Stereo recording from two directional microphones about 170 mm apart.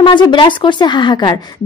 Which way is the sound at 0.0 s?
25° left (ahead or behind).